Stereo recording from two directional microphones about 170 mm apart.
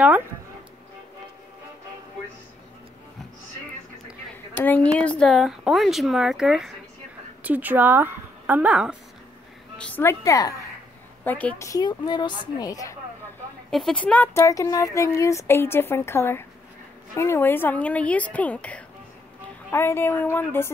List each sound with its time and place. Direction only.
4.6 s a woman's voice: 10° left (ahead or behind); by 8.9 s 5° right (ahead or behind)
9.8 s a woman's voice: 15° left (ahead or behind)
13.7 s speech: centre (ahead or behind)